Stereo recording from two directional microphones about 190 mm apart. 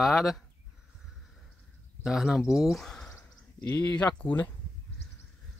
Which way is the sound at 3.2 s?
20° left (ahead or behind).